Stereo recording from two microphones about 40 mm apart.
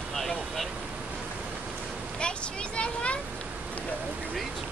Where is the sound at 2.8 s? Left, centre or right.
Left.